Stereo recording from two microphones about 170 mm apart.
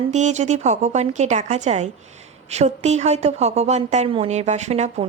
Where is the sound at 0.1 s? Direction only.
45° right (ahead or behind).